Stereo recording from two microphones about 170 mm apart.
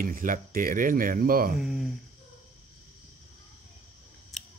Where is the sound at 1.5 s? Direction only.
Centre (ahead or behind).